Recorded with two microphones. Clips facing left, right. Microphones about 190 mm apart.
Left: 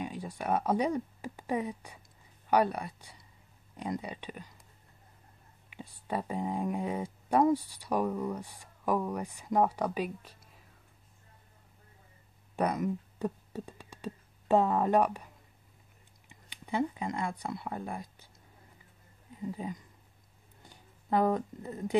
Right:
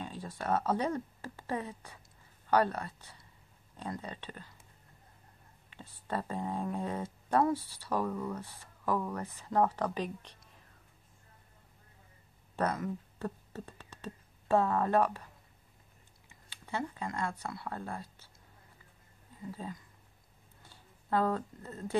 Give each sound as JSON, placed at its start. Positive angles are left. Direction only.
{"t": 0.0, "sound": "speech", "side_deg": 15}
{"t": 5.7, "sound": "speech", "side_deg": 15}
{"t": 12.5, "sound": "speech", "side_deg": 15}
{"t": 19.4, "sound": "speech", "side_deg": 15}